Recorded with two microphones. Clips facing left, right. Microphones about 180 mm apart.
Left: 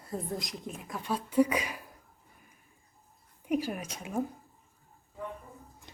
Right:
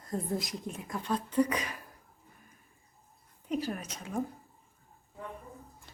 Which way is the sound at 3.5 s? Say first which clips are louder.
Left 3 dB; 10° left (ahead or behind).